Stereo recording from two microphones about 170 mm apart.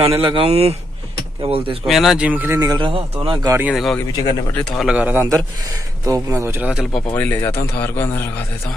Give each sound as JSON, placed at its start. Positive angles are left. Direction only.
{"t": 0.2, "sound": "speech", "side_deg": -30}
{"t": 1.9, "sound": "a man's voice", "side_deg": 0}
{"t": 2.6, "sound": "speech", "side_deg": -25}
{"t": 3.4, "sound": "a man's voice", "side_deg": -10}
{"t": 3.7, "sound": "a man's voice", "side_deg": 0}
{"t": 7.1, "sound": "a man's voice", "side_deg": 10}